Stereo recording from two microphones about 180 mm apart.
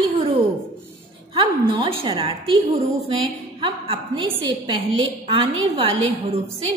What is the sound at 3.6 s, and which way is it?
A woman's voice, 30° right (ahead or behind).